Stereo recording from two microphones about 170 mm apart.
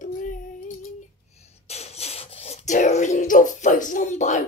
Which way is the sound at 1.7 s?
40° left (ahead or behind).